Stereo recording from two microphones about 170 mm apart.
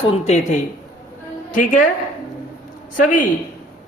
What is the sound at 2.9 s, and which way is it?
Speech, 50° left (ahead or behind).